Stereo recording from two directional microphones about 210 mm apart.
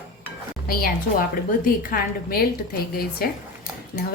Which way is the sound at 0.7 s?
45° left (ahead or behind).